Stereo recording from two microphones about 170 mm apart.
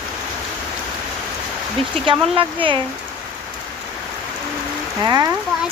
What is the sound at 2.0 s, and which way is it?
Speech, 30° right (ahead or behind).